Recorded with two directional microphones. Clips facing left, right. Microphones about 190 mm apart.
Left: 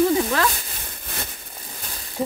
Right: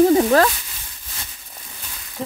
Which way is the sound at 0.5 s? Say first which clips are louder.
Left 5 dB; 55° left (ahead or behind).